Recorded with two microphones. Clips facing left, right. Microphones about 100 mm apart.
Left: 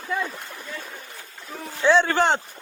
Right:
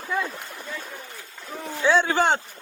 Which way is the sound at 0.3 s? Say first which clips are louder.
Right 1 dB; centre (ahead or behind).